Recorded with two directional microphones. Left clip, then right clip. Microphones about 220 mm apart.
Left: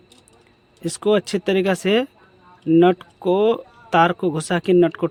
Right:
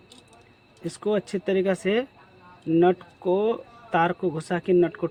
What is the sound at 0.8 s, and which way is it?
A man's voice, 40° left (ahead or behind).